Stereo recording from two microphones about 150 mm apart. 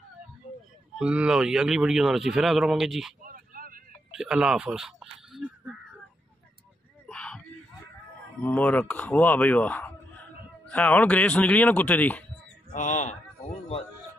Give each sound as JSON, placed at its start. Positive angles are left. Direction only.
{"t": 0.9, "sound": "speech", "side_deg": -5}
{"t": 3.3, "sound": "vehicle", "side_deg": -70}
{"t": 4.1, "sound": "a sound", "side_deg": -5}
{"t": 7.1, "sound": "a sound", "side_deg": 5}
{"t": 8.4, "sound": "speech", "side_deg": 10}
{"t": 12.7, "sound": "speech", "side_deg": 55}